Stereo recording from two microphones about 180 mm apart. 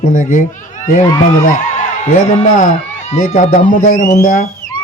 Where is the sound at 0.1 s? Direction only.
45° left (ahead or behind).